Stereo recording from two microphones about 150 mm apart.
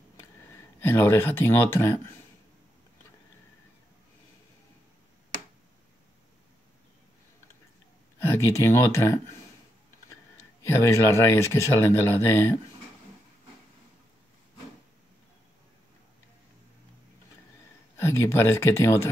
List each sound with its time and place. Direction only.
0.7 s speech: 15° left (ahead or behind)
8.2 s speech: 15° left (ahead or behind)
10.6 s speech: 20° left (ahead or behind)
17.9 s speech: 15° left (ahead or behind)